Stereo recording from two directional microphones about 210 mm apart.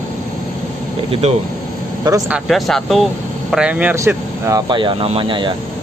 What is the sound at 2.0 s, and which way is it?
Speech, 15° right (ahead or behind).